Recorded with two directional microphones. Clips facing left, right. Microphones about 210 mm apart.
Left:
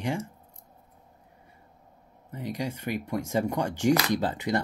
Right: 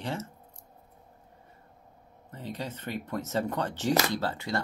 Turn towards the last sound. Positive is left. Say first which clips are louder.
# left 4 dB
turn(degrees=20)  # may be behind; listen again after turning